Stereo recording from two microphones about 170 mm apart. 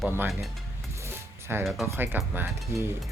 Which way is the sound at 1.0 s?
15° right (ahead or behind).